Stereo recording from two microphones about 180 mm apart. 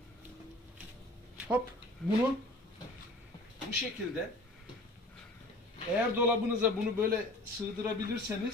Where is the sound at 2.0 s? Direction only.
5° left (ahead or behind).